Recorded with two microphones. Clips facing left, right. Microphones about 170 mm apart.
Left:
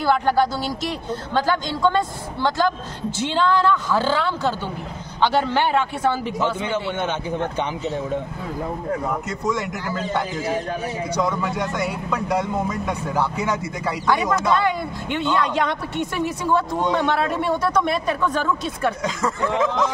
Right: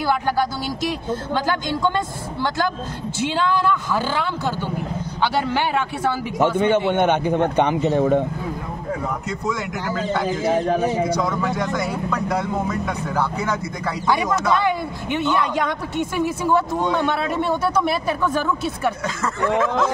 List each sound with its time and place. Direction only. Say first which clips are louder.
3.2 s a woman's voice: left 1 dB; 10° right (ahead or behind)
6.4 s a man's voice: right 9 dB; 55° right (ahead or behind)
11.8 s speech: right 1 dB; 10° left (ahead or behind)
14.0 s a woman's voice: even; 10° right (ahead or behind)